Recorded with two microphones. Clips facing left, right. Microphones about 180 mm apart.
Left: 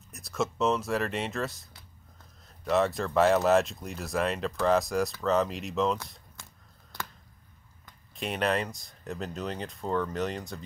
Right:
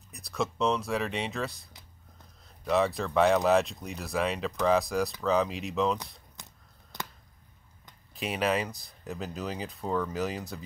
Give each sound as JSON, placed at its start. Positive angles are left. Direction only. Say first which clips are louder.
{"t": 0.1, "sound": "speech", "louder": "left 1 dB", "side_deg": 0}
{"t": 6.4, "sound": "a sound", "louder": "right 1 dB", "side_deg": -20}
{"t": 6.9, "sound": "scissors", "louder": "even", "side_deg": -20}
{"t": 8.1, "sound": "speech", "louder": "even", "side_deg": 0}